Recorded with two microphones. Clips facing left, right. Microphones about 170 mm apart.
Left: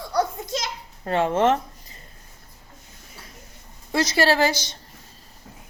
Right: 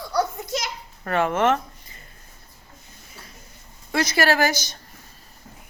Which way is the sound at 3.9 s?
30° left (ahead or behind).